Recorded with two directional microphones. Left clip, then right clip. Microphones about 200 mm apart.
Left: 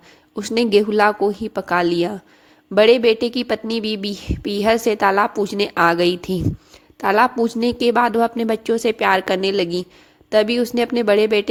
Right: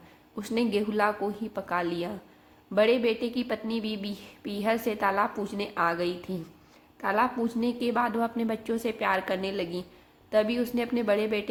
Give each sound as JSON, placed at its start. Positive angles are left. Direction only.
{"t": 0.3, "sound": "a woman's voice", "side_deg": 45}